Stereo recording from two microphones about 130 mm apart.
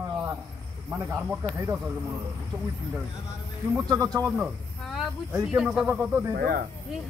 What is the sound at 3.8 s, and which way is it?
Speech, 30° right (ahead or behind).